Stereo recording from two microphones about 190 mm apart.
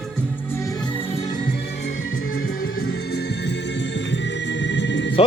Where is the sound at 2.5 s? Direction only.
50° left (ahead or behind); by 5.1 s 70° left (ahead or behind).